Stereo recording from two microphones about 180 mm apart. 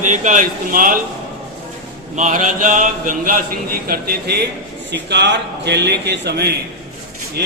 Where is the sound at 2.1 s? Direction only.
45° right (ahead or behind); by 4.4 s 60° right (ahead or behind).